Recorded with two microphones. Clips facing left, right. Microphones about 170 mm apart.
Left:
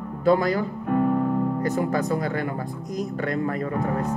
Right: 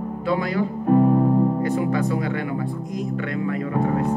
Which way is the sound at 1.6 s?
40° left (ahead or behind).